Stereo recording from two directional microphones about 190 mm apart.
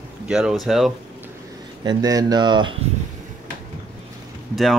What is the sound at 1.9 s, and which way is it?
Speech, 20° right (ahead or behind).